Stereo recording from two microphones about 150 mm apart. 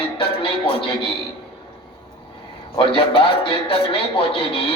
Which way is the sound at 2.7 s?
35° left (ahead or behind).